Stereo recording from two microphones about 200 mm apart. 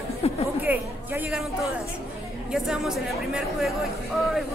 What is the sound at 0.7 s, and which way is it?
Speech, 10° right (ahead or behind).